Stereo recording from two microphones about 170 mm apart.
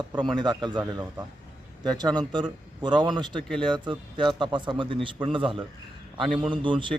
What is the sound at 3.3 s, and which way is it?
Speech, 5° left (ahead or behind).